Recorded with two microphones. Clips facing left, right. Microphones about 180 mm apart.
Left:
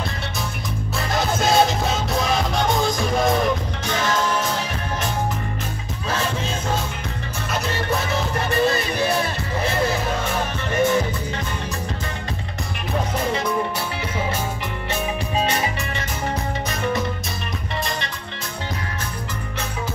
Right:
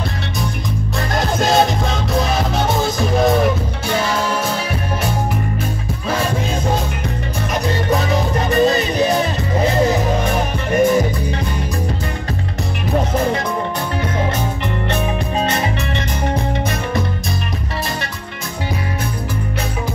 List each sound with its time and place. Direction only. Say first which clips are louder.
1.1 s music: right 3 dB; centre (ahead or behind)
7.5 s music: right 5 dB; 15° right (ahead or behind)
15.4 s music: right 4 dB; 10° left (ahead or behind)